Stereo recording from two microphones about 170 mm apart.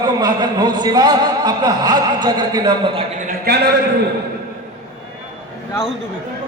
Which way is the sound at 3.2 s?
60° right (ahead or behind).